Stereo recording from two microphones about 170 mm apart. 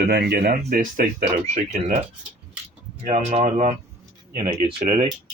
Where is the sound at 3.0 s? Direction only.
50° right (ahead or behind).